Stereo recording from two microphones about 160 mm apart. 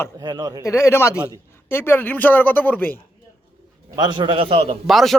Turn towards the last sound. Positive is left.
turn(degrees=0)  # may be behind; listen again after turning